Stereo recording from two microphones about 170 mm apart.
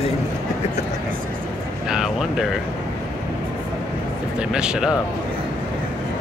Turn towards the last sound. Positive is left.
turn(degrees=-5)  # may be behind; listen again after turning